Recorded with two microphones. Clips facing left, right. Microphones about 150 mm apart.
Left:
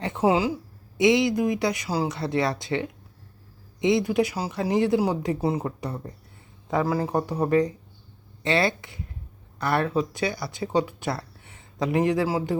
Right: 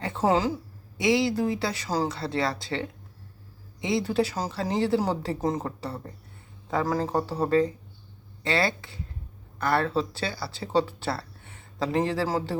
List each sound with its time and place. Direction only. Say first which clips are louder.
0.0 s speech: left 2 dB; 15° left (ahead or behind)
0.9 s speech: left 3 dB; 20° left (ahead or behind)